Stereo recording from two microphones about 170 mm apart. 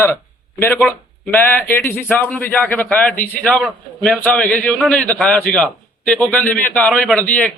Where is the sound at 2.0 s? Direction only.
5° left (ahead or behind).